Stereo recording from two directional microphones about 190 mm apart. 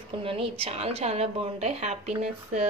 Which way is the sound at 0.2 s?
30° right (ahead or behind).